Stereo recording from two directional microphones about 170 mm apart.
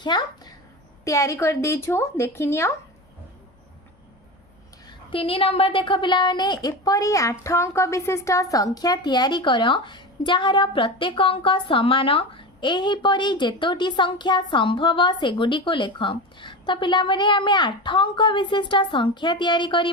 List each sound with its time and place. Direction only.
0.0 s a sound: 25° left (ahead or behind)
1.0 s speech: 15° left (ahead or behind)
4.9 s a woman's voice: 30° left (ahead or behind)